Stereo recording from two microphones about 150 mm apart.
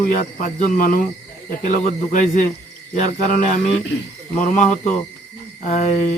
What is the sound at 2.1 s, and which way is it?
Speech, 60° left (ahead or behind).